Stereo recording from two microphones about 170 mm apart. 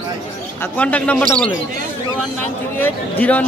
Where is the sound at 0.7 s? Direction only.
10° left (ahead or behind).